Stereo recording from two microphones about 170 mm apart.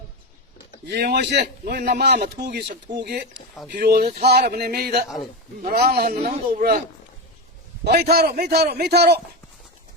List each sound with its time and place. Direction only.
0.9 s a man's voice: 75° right (ahead or behind)
3.3 s speech: centre (ahead or behind)
3.7 s speech: 65° right (ahead or behind)
7.9 s a man's voice: 70° right (ahead or behind)